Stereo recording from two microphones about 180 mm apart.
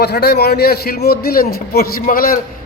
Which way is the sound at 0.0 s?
65° left (ahead or behind).